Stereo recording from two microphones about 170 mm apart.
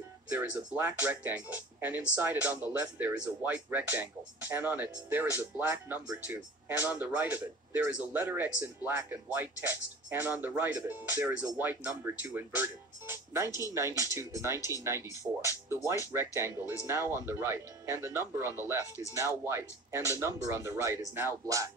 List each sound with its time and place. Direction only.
0.3 s speech: 10° right (ahead or behind)
13.5 s speech: 20° left (ahead or behind)
13.7 s speech: 15° right (ahead or behind)
15.3 s speech: 30° right (ahead or behind)
15.7 s speech: 15° right (ahead or behind)